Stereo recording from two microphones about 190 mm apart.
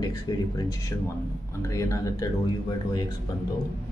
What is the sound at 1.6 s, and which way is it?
Speech, 15° left (ahead or behind).